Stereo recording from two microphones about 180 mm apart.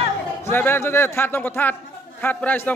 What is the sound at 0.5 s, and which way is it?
Speech, 10° left (ahead or behind).